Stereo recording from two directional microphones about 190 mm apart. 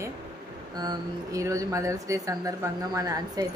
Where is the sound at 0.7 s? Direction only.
20° right (ahead or behind).